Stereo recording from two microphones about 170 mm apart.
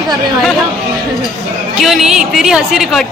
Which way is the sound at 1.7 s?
Centre (ahead or behind).